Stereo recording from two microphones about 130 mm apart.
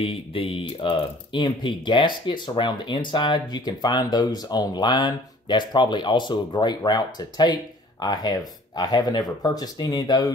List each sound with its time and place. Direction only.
0.0 s speech: 45° left (ahead or behind)